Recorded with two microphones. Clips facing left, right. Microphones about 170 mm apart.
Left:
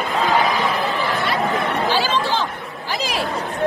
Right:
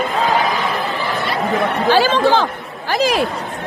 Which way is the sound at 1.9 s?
55° right (ahead or behind).